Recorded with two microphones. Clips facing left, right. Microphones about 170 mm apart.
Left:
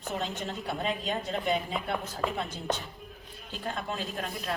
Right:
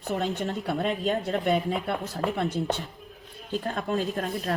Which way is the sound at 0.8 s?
50° right (ahead or behind).